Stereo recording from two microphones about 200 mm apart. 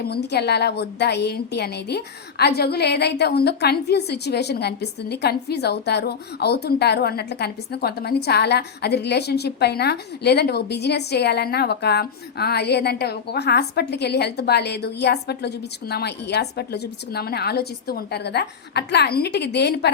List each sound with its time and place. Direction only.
0.0 s a woman's voice: 55° left (ahead or behind)